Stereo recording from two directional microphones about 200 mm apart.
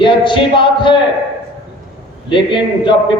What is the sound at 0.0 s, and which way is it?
Speech, 25° left (ahead or behind).